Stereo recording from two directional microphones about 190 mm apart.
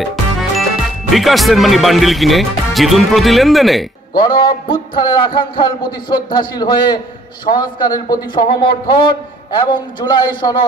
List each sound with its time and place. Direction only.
0.0 s music: centre (ahead or behind)
1.1 s speech: centre (ahead or behind)
4.2 s a sound: 25° left (ahead or behind)